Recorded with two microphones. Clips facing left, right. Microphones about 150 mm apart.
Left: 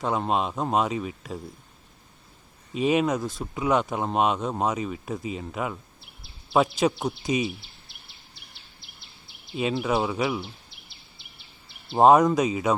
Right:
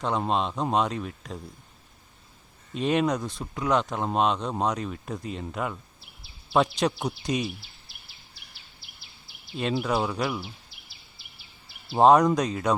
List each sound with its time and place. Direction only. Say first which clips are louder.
0.0 s speech: left 1 dB; 5° left (ahead or behind)
2.7 s speech: left 2 dB; 5° left (ahead or behind)
9.5 s speech: left 1 dB; centre (ahead or behind)